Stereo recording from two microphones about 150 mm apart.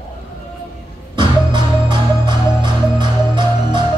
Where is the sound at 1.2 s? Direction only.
30° right (ahead or behind).